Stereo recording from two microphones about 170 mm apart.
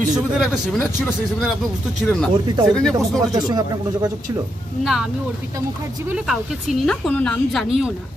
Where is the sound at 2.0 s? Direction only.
5° left (ahead or behind).